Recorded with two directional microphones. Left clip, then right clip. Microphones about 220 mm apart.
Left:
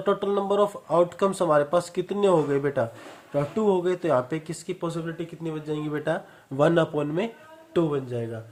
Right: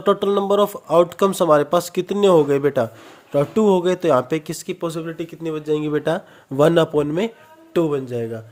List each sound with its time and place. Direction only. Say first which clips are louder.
0.0 s speech: right 6 dB; 40° right (ahead or behind)